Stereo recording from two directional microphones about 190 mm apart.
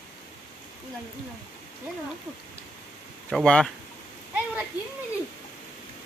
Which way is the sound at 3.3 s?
5° left (ahead or behind).